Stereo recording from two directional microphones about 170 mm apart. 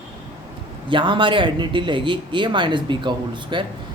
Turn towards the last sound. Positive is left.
turn(degrees=-30)  # may be behind; listen again after turning